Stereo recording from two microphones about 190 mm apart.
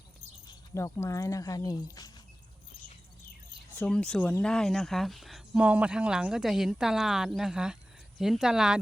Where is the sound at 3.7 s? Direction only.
5° left (ahead or behind).